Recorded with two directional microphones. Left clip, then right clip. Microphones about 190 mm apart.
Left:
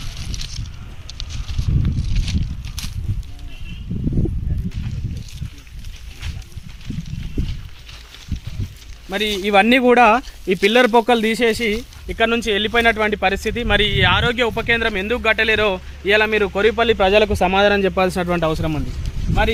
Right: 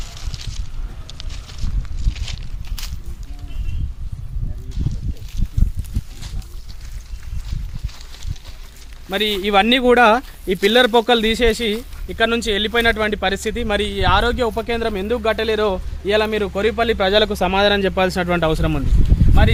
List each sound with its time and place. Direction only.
0.3 s a sound: centre (ahead or behind)
2.3 s a sound: 5° left (ahead or behind)
9.2 s speech: 15° right (ahead or behind)
9.5 s speech: 40° left (ahead or behind)
12.0 s speech: 25° left (ahead or behind)
18.6 s speech: centre (ahead or behind)